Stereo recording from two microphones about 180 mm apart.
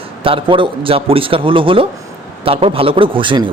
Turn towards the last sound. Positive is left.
turn(degrees=-25)  # may be behind; listen again after turning